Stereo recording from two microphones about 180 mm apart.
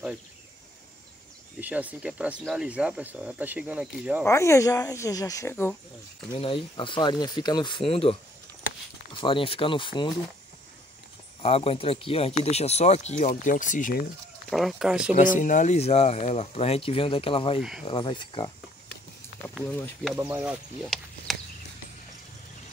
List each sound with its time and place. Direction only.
1.6 s speech: 10° right (ahead or behind)
4.2 s speech: 15° left (ahead or behind)
6.3 s speech: 30° left (ahead or behind)
11.4 s speech: 30° left (ahead or behind)
14.5 s speech: centre (ahead or behind)
15.1 s speech: 45° left (ahead or behind); by 17.6 s 30° left (ahead or behind)
17.6 s speech: 5° right (ahead or behind)
17.8 s speech: 25° left (ahead or behind)
20.1 s speech: 10° right (ahead or behind)
20.8 s a sound: centre (ahead or behind)